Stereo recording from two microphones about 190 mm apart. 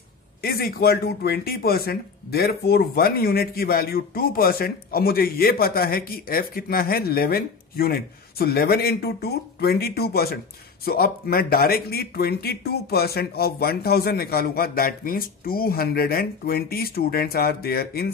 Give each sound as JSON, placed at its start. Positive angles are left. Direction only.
{"t": 0.4, "sound": "speech", "side_deg": 50}